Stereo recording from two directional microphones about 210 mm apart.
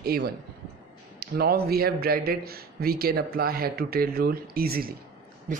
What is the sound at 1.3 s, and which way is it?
A man's voice, 50° right (ahead or behind).